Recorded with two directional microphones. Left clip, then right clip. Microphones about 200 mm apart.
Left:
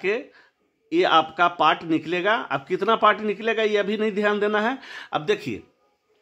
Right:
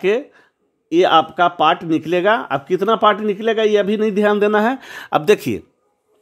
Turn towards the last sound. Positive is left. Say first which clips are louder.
# right 9 dB
turn(degrees=-50)  # may be behind; listen again after turning